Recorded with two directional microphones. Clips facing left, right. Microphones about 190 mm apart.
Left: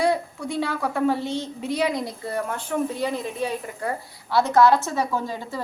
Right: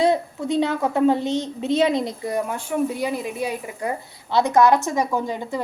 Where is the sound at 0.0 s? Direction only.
20° right (ahead or behind).